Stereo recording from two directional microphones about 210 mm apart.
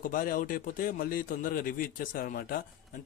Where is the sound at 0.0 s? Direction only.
40° left (ahead or behind).